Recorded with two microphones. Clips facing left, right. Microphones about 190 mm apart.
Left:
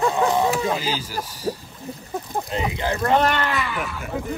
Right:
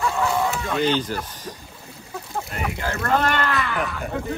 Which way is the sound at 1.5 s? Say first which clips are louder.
Left 10 dB; 35° left (ahead or behind).